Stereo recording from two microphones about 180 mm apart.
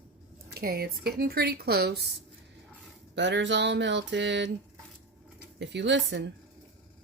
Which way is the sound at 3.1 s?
80° right.